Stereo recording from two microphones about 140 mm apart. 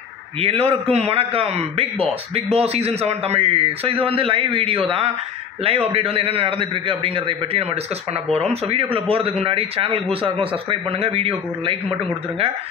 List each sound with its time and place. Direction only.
0.4 s a man's voice: 45° right (ahead or behind)